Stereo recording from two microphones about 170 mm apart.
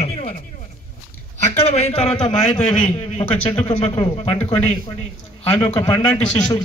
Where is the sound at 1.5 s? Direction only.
40° left (ahead or behind).